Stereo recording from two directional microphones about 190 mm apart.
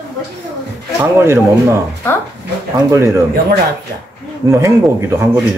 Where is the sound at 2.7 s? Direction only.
15° right (ahead or behind).